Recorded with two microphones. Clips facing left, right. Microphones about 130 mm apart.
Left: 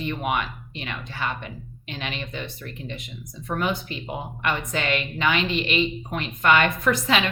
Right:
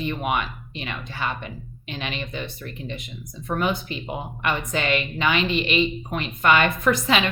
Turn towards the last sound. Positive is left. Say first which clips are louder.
# right 1 dB
turn(degrees=-20)  # may be behind; listen again after turning